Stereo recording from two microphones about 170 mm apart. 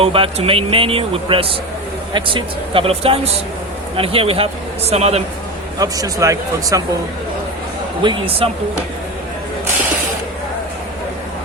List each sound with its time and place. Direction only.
0.0 s speech: 35° right (ahead or behind)
5.8 s speech: 20° right (ahead or behind)
8.0 s speech: 35° right (ahead or behind)